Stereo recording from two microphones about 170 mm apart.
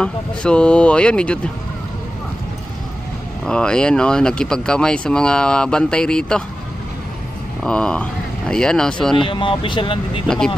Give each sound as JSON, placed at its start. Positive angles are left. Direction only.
{"t": 0.0, "sound": "speech", "side_deg": 5}
{"t": 3.4, "sound": "speech", "side_deg": 5}
{"t": 7.6, "sound": "speech", "side_deg": 5}
{"t": 9.1, "sound": "speech", "side_deg": 30}
{"t": 10.2, "sound": "speech", "side_deg": 5}